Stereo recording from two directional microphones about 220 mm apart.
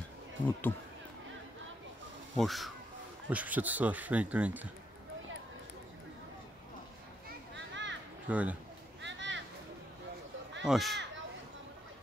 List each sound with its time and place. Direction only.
2.3 s speech: centre (ahead or behind)
7.5 s children playing: 55° right (ahead or behind)
8.3 s speech: 5° right (ahead or behind)
9.0 s children playing: 55° right (ahead or behind)
10.6 s speech: centre (ahead or behind)